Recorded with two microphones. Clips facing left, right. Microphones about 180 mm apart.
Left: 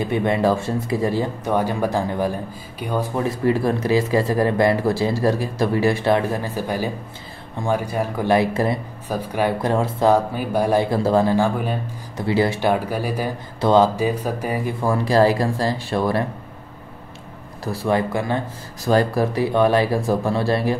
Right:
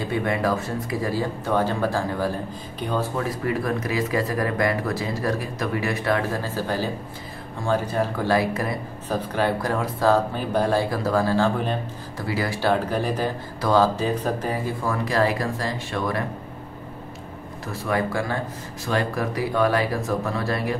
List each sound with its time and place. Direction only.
0.1 s speech: 25° left (ahead or behind)
9.1 s speech: 10° left (ahead or behind)
9.6 s speech: 25° left (ahead or behind)
12.2 s speech: 25° left (ahead or behind)
13.6 s speech: 25° left (ahead or behind)
13.9 s speech: 10° left (ahead or behind)
14.9 s speech: 30° left (ahead or behind)
17.6 s speech: 30° left (ahead or behind)
18.9 s speech: 35° left (ahead or behind)